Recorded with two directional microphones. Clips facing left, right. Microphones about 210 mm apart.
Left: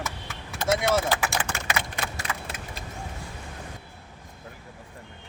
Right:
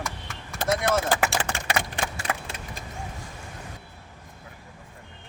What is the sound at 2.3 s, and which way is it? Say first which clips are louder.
Keys jangling: right 4 dB; 55° right (ahead or behind).